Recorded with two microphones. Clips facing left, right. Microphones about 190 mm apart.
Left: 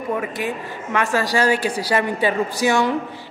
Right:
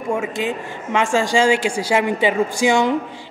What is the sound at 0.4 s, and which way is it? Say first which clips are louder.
A woman's voice: right 2 dB; 20° right (ahead or behind).